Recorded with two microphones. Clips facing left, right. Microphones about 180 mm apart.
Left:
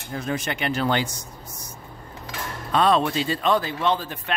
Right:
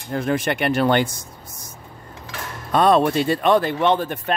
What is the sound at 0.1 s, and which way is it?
Speech, 60° right (ahead or behind).